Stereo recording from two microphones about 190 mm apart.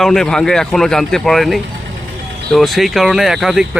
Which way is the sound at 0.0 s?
Centre (ahead or behind).